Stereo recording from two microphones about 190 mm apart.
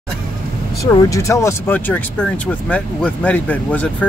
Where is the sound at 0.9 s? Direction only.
15° left (ahead or behind).